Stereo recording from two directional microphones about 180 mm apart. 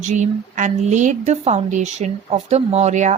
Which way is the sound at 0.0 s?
45° right (ahead or behind).